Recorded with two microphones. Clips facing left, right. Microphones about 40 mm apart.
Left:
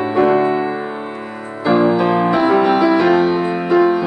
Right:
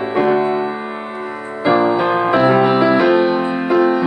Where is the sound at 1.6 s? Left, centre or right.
Centre.